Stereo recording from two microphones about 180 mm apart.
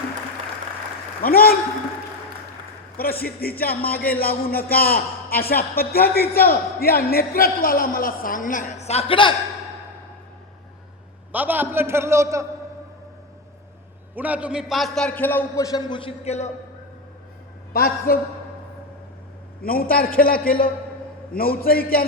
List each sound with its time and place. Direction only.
1.2 s speech: 55° left (ahead or behind)
3.0 s speech: 55° left (ahead or behind); by 9.3 s 30° left (ahead or behind)
11.3 s a man's voice: 10° right (ahead or behind)
14.2 s a man's voice: 10° right (ahead or behind); by 16.5 s 35° left (ahead or behind)
17.7 s speech: 55° left (ahead or behind)
19.6 s speech: 55° left (ahead or behind)